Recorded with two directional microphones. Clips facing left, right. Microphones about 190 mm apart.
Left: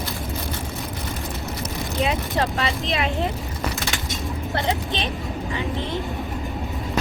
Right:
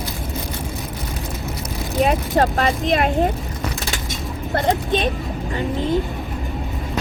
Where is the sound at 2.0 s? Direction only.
45° right (ahead or behind).